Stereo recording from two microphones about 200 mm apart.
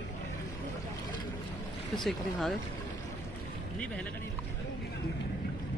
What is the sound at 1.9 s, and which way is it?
Speech, centre (ahead or behind).